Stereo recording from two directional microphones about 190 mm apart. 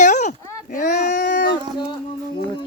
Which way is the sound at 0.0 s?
40° left (ahead or behind).